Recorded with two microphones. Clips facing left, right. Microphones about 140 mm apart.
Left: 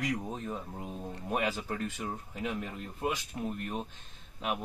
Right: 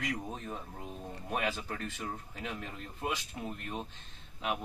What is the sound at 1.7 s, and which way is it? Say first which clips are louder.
Speech: left 3 dB; 15° left (ahead or behind).